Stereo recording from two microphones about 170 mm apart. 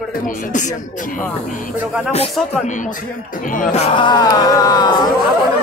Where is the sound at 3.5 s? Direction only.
45° left (ahead or behind).